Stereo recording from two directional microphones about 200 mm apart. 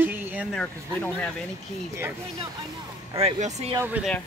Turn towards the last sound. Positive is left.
turn(degrees=-10)  # may be behind; listen again after turning